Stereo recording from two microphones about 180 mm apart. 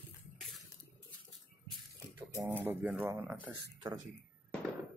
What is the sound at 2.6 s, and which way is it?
Speech, 10° right (ahead or behind).